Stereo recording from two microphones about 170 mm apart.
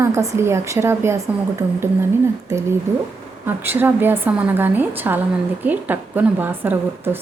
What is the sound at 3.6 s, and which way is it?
A woman's voice, 10° right (ahead or behind).